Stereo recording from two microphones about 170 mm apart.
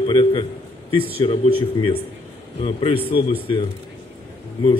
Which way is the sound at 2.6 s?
30° left (ahead or behind).